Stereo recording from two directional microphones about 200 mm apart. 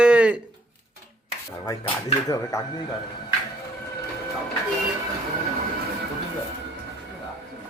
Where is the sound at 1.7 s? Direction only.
15° left (ahead or behind).